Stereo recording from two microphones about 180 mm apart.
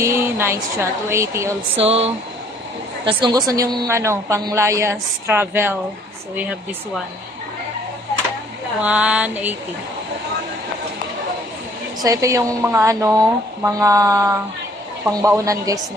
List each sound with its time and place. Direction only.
0.0 s a man's voice: 15° right (ahead or behind)
1.7 s a sound: 35° right (ahead or behind)
3.0 s a man's voice: 25° right (ahead or behind); by 6.6 s 10° right (ahead or behind)
8.8 s a man's voice: 5° right (ahead or behind)
12.0 s speech: 20° right (ahead or behind)